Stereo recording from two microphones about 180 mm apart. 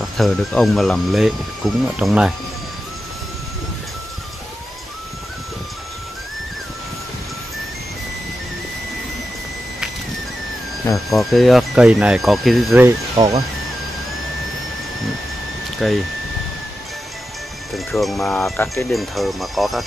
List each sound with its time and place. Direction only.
0.0 s speech: centre (ahead or behind)
11.1 s speech: centre (ahead or behind)
12.7 s speech: 15° right (ahead or behind)
15.8 s speech: centre (ahead or behind)
17.7 s speech: centre (ahead or behind)